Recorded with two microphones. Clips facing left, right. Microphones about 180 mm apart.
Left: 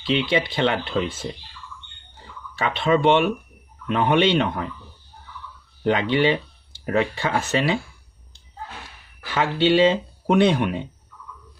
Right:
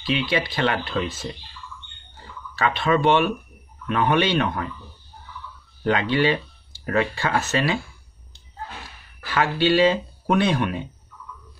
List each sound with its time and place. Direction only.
0.0 s speech: 20° left (ahead or behind)
2.5 s speech: 25° left (ahead or behind)
5.9 s speech: 20° left (ahead or behind)
9.3 s speech: 20° left (ahead or behind)